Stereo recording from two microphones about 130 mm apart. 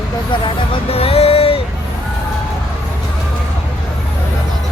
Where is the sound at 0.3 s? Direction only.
40° left (ahead or behind).